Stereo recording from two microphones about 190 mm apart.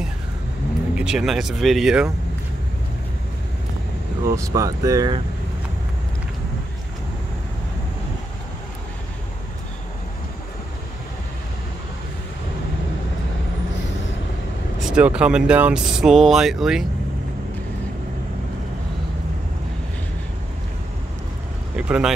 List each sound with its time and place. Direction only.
0.9 s speech: 5° right (ahead or behind)
4.3 s speech: 15° right (ahead or behind)
14.8 s speech: 5° right (ahead or behind)
21.7 s vehicle: 5° right (ahead or behind)